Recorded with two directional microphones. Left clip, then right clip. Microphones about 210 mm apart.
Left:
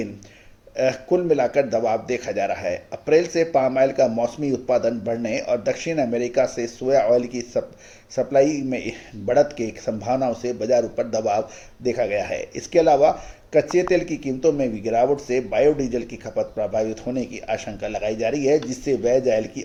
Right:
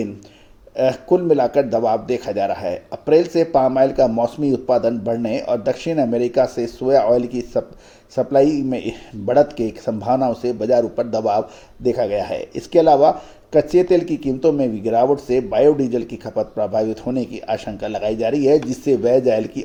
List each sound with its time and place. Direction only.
0.8 s a man's voice: 30° right (ahead or behind)